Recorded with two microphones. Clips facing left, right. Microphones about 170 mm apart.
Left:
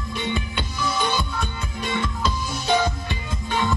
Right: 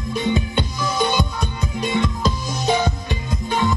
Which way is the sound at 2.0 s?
40° right (ahead or behind).